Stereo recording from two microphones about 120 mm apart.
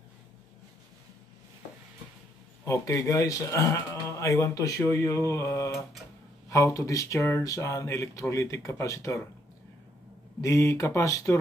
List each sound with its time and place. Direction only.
2.6 s speech: 25° left (ahead or behind)
10.4 s speech: 25° left (ahead or behind)